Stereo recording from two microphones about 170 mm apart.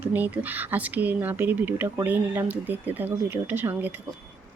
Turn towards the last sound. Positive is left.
turn(degrees=-10)  # may be behind; listen again after turning